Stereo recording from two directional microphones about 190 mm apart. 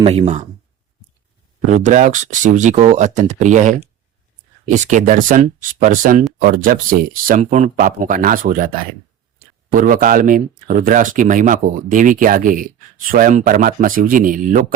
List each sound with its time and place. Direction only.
0.0 s speech: 30° right (ahead or behind)
1.6 s speech: 40° right (ahead or behind)